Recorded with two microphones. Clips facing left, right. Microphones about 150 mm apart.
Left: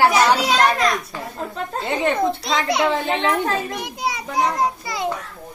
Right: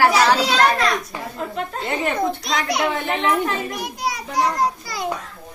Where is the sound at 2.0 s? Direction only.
25° left (ahead or behind).